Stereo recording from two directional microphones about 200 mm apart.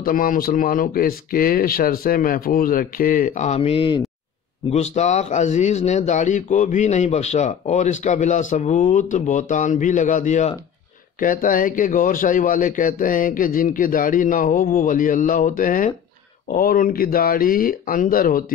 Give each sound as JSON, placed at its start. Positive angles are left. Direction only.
{"t": 0.0, "sound": "a man's voice", "side_deg": 45}